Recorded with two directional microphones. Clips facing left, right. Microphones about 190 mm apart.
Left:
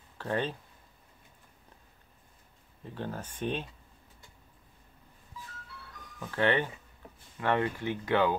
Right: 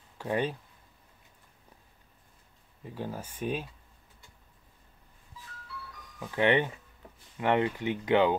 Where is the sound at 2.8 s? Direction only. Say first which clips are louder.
Right 1 dB; 10° right (ahead or behind).